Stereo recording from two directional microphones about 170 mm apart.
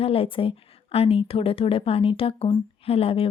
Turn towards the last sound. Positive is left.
turn(degrees=35)  # may be behind; listen again after turning